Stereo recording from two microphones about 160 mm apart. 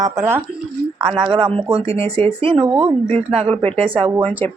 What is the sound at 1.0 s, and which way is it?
Speech, 30° right (ahead or behind).